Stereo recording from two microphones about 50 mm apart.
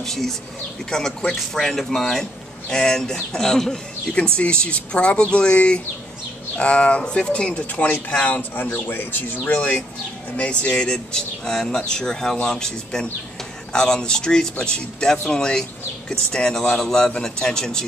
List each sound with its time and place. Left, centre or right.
0.0 s speech: centre
4.1 s speech: left
8.4 s speech: left
9.5 s speech: left